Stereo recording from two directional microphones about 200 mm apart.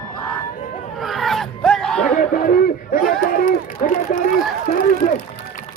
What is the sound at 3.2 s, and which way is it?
Run, 40° left (ahead or behind).